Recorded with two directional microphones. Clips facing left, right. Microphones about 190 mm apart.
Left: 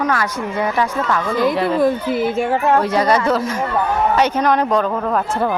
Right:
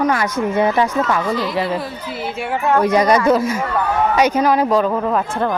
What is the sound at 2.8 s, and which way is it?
Speech, 15° right (ahead or behind).